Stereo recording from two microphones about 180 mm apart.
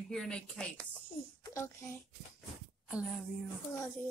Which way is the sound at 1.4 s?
15° left (ahead or behind).